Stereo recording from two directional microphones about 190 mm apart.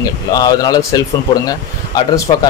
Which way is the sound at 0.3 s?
20° left (ahead or behind).